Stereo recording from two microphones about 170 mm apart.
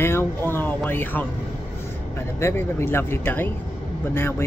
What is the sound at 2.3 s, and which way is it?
Speech, 15° left (ahead or behind).